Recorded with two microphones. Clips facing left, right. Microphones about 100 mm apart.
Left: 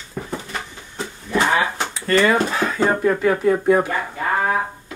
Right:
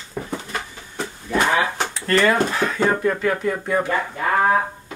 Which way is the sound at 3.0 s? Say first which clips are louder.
Left 3 dB; 15° left (ahead or behind).